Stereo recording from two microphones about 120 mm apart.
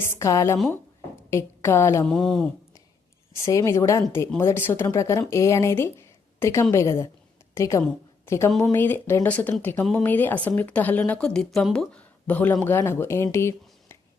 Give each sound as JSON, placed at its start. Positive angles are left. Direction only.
{"t": 0.0, "sound": "a woman's voice", "side_deg": 25}
{"t": 2.0, "sound": "a woman's voice", "side_deg": 5}
{"t": 3.4, "sound": "a woman's voice", "side_deg": 25}
{"t": 12.3, "sound": "a woman's voice", "side_deg": 15}